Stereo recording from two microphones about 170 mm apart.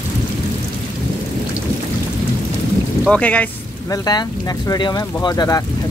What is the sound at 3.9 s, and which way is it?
Speech, 20° left (ahead or behind).